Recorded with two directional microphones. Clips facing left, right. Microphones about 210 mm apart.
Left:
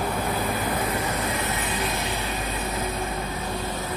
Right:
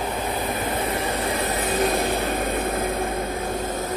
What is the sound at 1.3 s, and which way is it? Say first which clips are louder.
Vehicle: right 5 dB; 40° right (ahead or behind).